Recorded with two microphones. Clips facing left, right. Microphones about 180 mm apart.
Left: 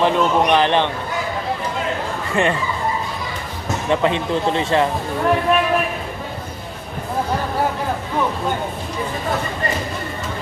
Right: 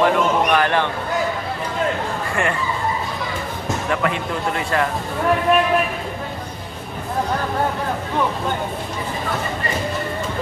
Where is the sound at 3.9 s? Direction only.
25° left (ahead or behind).